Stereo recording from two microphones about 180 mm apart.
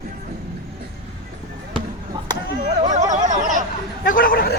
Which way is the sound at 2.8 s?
45° right (ahead or behind).